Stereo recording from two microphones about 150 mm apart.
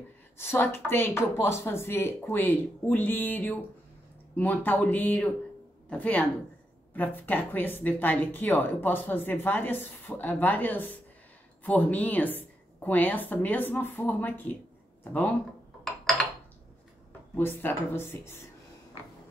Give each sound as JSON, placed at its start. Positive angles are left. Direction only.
{"t": 0.4, "sound": "speech", "side_deg": 15}
{"t": 17.4, "sound": "speech", "side_deg": 15}